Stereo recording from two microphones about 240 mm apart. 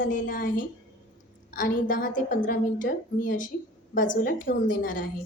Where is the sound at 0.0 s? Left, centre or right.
Left.